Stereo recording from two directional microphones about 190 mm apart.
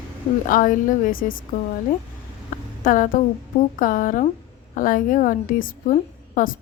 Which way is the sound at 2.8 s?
45° left (ahead or behind).